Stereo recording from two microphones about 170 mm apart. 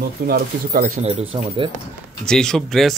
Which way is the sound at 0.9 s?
35° right (ahead or behind).